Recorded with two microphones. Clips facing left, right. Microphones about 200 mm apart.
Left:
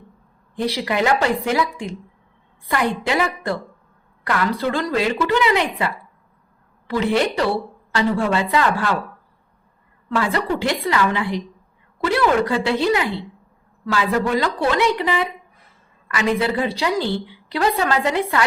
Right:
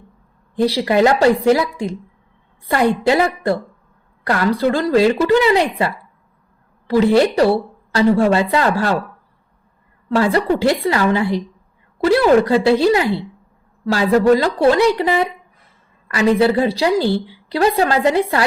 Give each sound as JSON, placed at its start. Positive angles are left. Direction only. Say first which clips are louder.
{"t": 0.5, "sound": "a woman's voice", "louder": "right 7 dB", "side_deg": -35}
{"t": 10.2, "sound": "a woman's voice", "louder": "right 6 dB", "side_deg": -35}